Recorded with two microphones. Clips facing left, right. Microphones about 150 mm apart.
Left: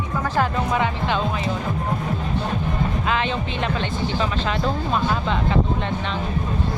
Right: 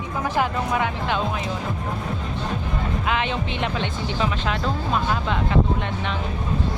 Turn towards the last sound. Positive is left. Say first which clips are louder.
# left 1 dB
turn(degrees=-5)  # may be behind; listen again after turning